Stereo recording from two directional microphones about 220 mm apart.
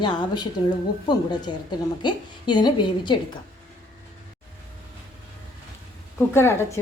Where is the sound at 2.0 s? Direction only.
20° left (ahead or behind).